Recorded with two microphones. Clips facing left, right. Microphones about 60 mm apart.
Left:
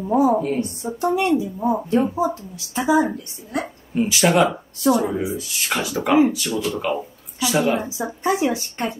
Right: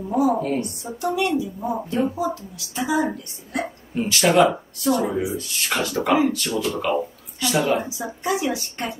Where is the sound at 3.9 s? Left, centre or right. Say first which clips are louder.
Even; centre.